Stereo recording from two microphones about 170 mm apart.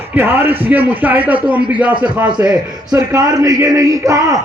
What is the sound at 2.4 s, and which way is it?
A man's voice, 10° right (ahead or behind).